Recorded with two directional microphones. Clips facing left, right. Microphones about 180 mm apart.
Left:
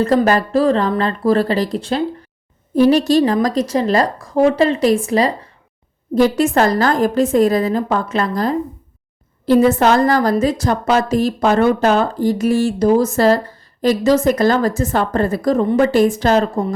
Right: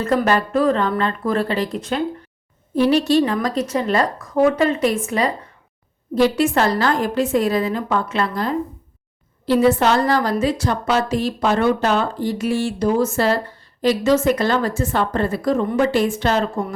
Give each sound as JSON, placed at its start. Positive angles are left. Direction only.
{"t": 0.0, "sound": "speech", "side_deg": 35}
{"t": 6.1, "sound": "a woman's voice", "side_deg": 45}